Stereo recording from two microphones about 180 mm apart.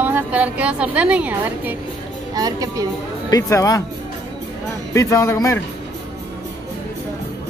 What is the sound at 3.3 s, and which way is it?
Speech, 20° left (ahead or behind).